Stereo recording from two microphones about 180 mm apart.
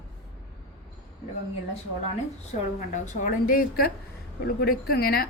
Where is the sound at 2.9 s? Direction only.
50° left (ahead or behind).